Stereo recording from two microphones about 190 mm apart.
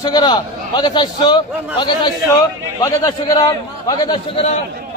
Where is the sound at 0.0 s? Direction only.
20° left (ahead or behind).